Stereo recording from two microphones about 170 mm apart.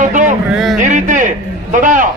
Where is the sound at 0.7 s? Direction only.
45° right (ahead or behind).